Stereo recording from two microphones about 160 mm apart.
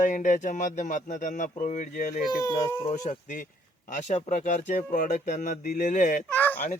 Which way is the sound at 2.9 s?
50° left (ahead or behind).